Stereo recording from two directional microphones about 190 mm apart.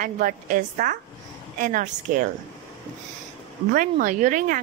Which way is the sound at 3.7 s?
45° right (ahead or behind).